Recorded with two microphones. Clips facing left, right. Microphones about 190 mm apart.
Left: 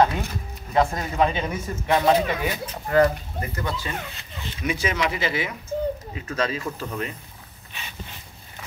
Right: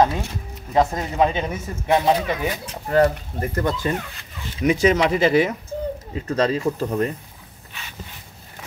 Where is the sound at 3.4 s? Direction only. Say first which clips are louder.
Right 8 dB; 50° right (ahead or behind).